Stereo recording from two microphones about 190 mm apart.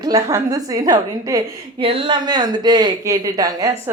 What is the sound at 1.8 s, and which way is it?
Speech, 30° right (ahead or behind).